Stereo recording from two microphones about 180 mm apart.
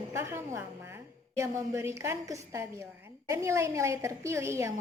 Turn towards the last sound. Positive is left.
turn(degrees=-15)  # may be behind; listen again after turning